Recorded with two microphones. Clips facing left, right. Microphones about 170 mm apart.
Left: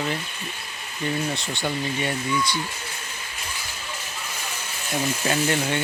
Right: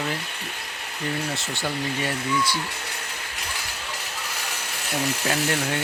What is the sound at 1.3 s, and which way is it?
Speech, centre (ahead or behind).